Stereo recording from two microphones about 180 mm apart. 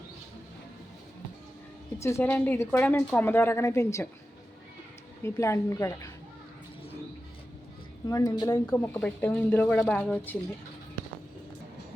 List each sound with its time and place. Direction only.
2.0 s speech: 15° left (ahead or behind)
5.2 s speech: 15° left (ahead or behind)
8.0 s speech: 20° left (ahead or behind)